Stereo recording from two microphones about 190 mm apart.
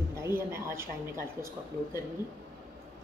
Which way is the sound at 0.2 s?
15° right (ahead or behind).